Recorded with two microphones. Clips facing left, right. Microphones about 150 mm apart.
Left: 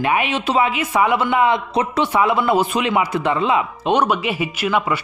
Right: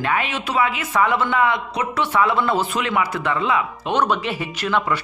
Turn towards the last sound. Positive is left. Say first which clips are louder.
# left 2 dB
turn(degrees=10)  # may be behind; listen again after turning